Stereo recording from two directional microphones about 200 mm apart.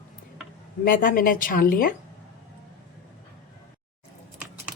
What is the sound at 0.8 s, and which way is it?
A woman's voice, 45° left (ahead or behind).